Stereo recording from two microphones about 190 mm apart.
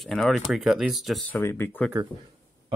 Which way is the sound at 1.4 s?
10° left (ahead or behind).